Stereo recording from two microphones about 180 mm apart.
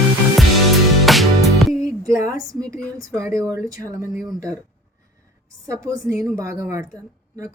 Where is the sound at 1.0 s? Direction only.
Centre (ahead or behind).